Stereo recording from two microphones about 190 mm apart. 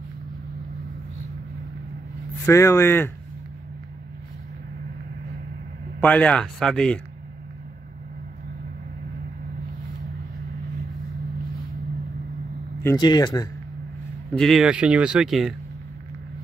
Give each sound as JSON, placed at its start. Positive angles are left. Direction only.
{"t": 2.4, "sound": "speech", "side_deg": 15}
{"t": 5.9, "sound": "speech", "side_deg": 5}
{"t": 12.8, "sound": "speech", "side_deg": 20}
{"t": 14.3, "sound": "speech", "side_deg": 0}